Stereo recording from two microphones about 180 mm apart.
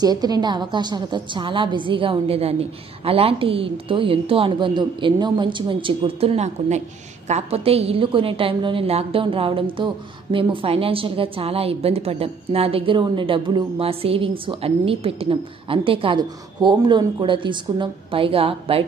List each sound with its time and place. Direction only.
0.0 s a woman's voice: 20° right (ahead or behind)